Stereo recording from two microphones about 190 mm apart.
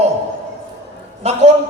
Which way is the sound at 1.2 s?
35° right (ahead or behind).